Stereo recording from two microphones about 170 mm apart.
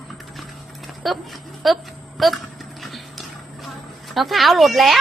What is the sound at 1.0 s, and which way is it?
A woman's voice, centre (ahead or behind).